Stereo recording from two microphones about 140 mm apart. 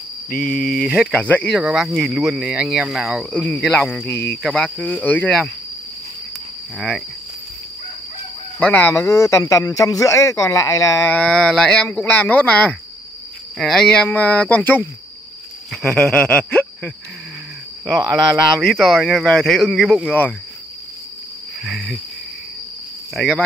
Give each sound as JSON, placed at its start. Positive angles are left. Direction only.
{"t": 0.4, "sound": "speech", "side_deg": 10}
{"t": 3.3, "sound": "speech", "side_deg": 10}
{"t": 8.5, "sound": "a man's voice", "side_deg": 10}
{"t": 11.1, "sound": "speech", "side_deg": 5}
{"t": 15.7, "sound": "speech", "side_deg": 0}
{"t": 21.6, "sound": "speech", "side_deg": 5}
{"t": 23.1, "sound": "speech", "side_deg": 0}